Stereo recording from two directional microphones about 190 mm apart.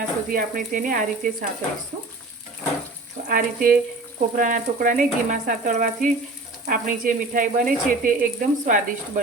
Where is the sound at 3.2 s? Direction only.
45° right (ahead or behind).